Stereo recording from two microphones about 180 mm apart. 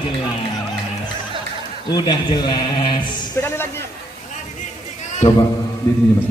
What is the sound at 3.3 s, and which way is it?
Speech, 15° left (ahead or behind).